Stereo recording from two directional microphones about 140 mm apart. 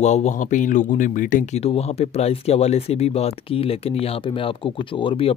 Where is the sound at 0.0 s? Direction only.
55° left (ahead or behind).